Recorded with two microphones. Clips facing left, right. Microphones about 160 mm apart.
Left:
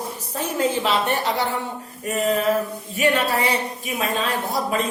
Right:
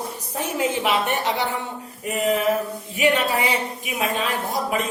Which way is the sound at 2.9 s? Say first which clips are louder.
Even; 15° right (ahead or behind).